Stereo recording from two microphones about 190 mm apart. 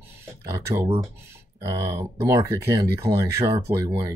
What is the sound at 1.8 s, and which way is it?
Speech, 15° right (ahead or behind).